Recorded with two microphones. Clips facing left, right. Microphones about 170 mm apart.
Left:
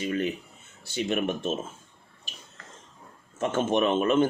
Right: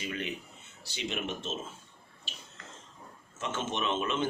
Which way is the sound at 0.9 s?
55° left (ahead or behind).